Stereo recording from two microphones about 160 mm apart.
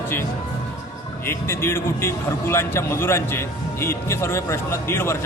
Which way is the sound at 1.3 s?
15° left (ahead or behind).